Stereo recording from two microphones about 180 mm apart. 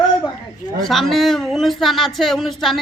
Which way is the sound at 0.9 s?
Centre (ahead or behind).